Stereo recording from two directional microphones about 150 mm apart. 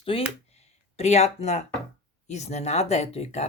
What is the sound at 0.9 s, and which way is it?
Speech, 45° left (ahead or behind).